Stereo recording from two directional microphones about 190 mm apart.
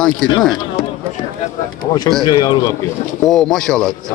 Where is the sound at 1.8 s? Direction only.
20° left (ahead or behind).